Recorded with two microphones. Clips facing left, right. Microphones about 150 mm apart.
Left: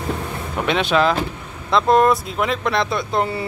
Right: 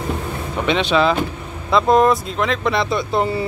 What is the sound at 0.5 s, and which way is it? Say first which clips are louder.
Speech: right 1 dB; centre (ahead or behind).